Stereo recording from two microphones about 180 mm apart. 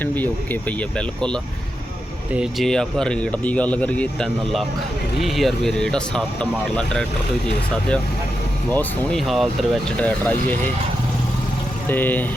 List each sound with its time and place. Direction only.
0.0 s speech: 10° left (ahead or behind)
8.7 s speech: 10° left (ahead or behind)
9.2 s speech: centre (ahead or behind)
11.9 s speech: 10° left (ahead or behind)